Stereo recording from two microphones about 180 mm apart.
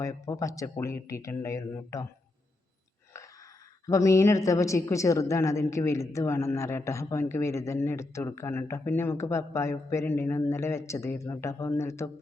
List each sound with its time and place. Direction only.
0.0 s a woman's voice: 15° left (ahead or behind)
3.8 s a woman's voice: 15° left (ahead or behind)